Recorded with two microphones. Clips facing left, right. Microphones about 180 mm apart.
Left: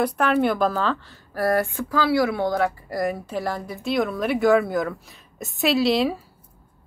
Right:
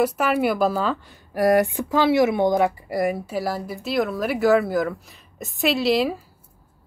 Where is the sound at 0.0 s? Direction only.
5° right (ahead or behind).